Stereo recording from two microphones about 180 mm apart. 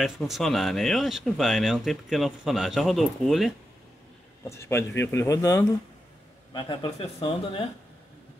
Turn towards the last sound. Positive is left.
turn(degrees=30)  # may be behind; listen again after turning